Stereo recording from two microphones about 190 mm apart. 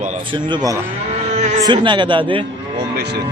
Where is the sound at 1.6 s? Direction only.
25° right (ahead or behind).